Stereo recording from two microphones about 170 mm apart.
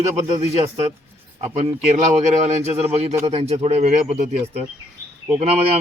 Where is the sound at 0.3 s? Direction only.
35° right (ahead or behind).